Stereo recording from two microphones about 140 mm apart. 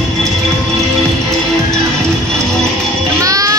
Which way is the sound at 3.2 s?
25° right (ahead or behind).